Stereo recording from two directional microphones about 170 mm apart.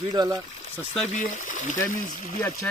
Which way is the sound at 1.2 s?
50° left (ahead or behind).